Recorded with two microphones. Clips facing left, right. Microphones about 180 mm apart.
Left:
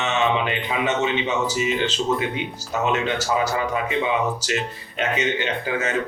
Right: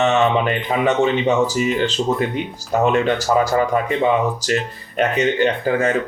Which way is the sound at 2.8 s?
50° right (ahead or behind).